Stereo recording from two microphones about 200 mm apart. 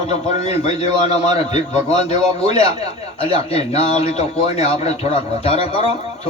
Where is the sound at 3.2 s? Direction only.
30° left (ahead or behind).